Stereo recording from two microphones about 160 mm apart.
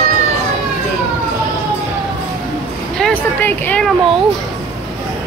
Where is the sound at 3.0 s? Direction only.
10° left (ahead or behind).